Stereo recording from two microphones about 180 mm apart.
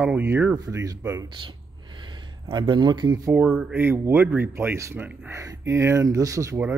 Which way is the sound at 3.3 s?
10° right (ahead or behind).